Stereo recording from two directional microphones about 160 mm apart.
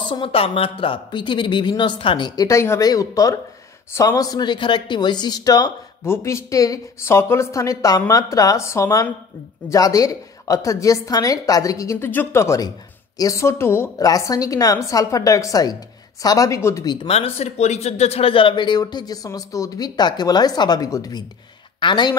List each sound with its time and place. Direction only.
0.0 s speech: 30° left (ahead or behind)
17.1 s a woman's voice: 40° left (ahead or behind)